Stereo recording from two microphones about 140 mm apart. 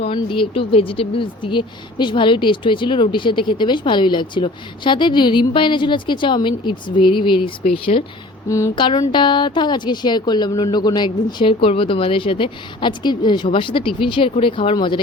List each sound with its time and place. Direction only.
0.0 s speech: 40° left (ahead or behind)
8.4 s speech: 20° left (ahead or behind)
8.7 s speech: 35° left (ahead or behind)